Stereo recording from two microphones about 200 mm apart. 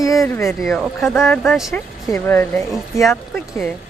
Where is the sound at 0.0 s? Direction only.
15° left (ahead or behind).